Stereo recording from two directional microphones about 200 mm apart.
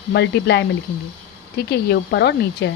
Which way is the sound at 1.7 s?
55° left (ahead or behind).